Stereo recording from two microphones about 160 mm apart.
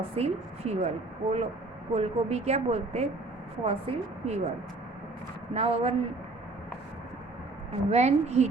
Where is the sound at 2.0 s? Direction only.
40° right (ahead or behind).